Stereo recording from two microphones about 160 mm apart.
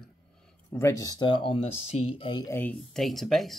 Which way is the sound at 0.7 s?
20° left (ahead or behind).